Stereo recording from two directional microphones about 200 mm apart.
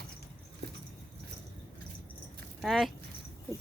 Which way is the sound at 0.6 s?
55° right (ahead or behind).